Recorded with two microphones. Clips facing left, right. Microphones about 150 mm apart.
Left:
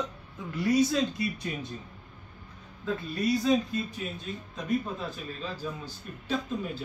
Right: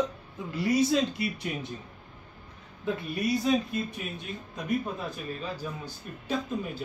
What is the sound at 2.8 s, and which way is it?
A man's voice, 20° right (ahead or behind).